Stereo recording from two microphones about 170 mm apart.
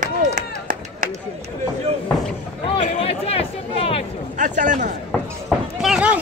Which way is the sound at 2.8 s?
40° left (ahead or behind).